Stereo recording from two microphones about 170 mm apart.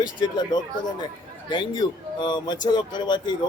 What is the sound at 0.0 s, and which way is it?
Speech, 25° left (ahead or behind).